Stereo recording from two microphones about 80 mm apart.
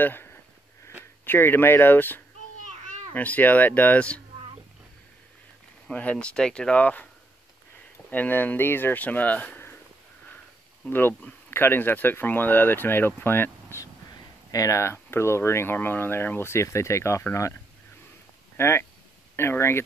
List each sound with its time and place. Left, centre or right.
0.0 s speech: left
5.9 s speech: centre
8.1 s speech: left
10.9 s speech: left
14.5 s speech: left
18.6 s speech: left